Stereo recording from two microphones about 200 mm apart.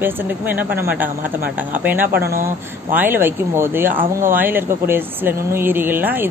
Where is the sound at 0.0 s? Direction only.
10° right (ahead or behind).